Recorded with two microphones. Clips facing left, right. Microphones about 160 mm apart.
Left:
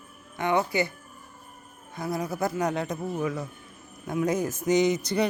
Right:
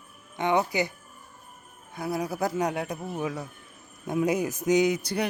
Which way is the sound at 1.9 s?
10° right (ahead or behind).